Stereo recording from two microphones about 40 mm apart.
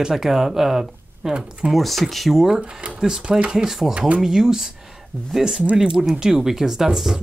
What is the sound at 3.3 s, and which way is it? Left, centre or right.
Speech, centre.